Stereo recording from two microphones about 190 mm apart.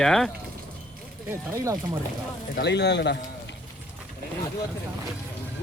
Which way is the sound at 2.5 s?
65° left (ahead or behind).